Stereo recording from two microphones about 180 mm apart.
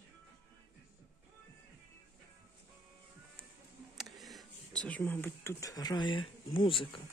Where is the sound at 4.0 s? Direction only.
Centre (ahead or behind); by 6.9 s 30° left (ahead or behind).